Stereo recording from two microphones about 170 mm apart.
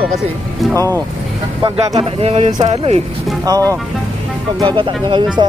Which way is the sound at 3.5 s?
20° right (ahead or behind).